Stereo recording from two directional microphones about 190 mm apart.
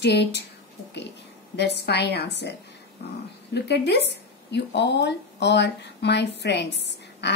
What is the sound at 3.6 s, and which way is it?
Speech, 60° left (ahead or behind).